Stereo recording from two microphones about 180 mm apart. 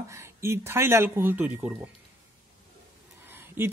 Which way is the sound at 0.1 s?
15° right (ahead or behind).